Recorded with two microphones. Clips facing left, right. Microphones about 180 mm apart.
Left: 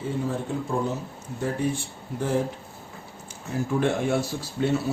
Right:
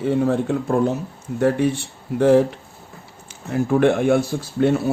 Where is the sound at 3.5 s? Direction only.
60° right (ahead or behind).